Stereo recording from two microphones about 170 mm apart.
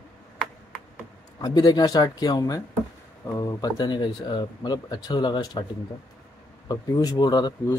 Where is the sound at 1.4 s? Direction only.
25° left (ahead or behind).